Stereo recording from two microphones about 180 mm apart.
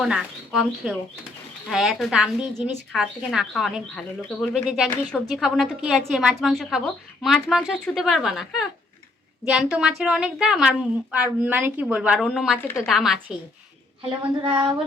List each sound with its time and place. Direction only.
0.0 s a woman's voice: 5° right (ahead or behind)
14.4 s speech: 25° right (ahead or behind)